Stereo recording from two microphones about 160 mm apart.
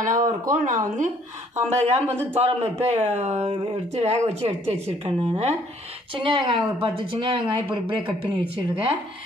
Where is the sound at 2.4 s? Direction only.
40° right (ahead or behind).